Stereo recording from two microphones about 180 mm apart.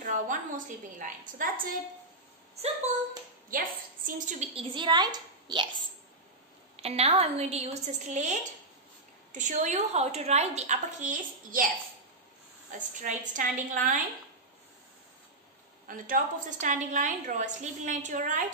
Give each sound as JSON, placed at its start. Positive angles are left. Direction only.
{"t": 0.0, "sound": "a woman's voice", "side_deg": -45}
{"t": 3.4, "sound": "a woman's voice", "side_deg": -50}
{"t": 6.8, "sound": "a woman's voice", "side_deg": -35}
{"t": 12.7, "sound": "a woman's voice", "side_deg": -45}
{"t": 15.9, "sound": "a woman's voice", "side_deg": -50}